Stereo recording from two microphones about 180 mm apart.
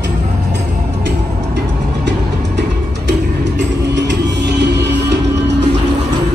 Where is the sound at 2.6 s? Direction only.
75° right (ahead or behind).